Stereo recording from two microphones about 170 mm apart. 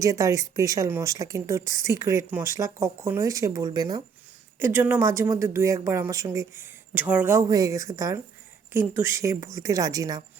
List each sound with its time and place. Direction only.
0.0 s a woman's voice: 20° right (ahead or behind)
4.6 s a woman's voice: 10° right (ahead or behind)